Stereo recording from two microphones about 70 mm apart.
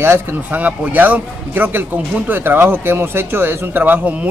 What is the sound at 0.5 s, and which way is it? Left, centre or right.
A man's voice, right.